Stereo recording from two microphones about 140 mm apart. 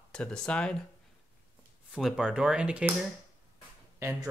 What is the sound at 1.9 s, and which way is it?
Speech, 5° right (ahead or behind).